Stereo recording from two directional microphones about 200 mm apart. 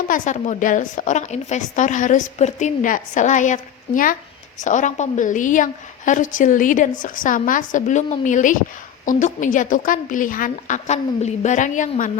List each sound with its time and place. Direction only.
0.1 s a woman's voice: 40° left (ahead or behind)